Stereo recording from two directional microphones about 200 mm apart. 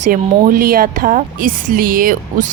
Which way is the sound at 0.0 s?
45° right (ahead or behind).